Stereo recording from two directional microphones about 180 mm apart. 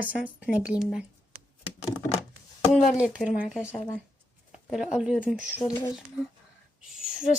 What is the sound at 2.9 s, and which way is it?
Speech, 5° right (ahead or behind).